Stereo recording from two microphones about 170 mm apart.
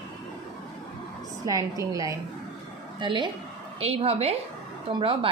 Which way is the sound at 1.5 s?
20° right (ahead or behind).